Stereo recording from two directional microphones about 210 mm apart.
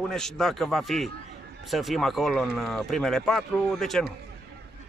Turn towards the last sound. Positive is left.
turn(degrees=0)  # may be behind; listen again after turning